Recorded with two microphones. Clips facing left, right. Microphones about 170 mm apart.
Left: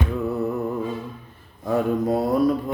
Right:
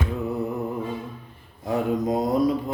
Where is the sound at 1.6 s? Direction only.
15° right (ahead or behind).